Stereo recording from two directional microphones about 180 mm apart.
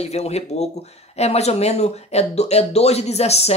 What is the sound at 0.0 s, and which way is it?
Speech, 35° left (ahead or behind).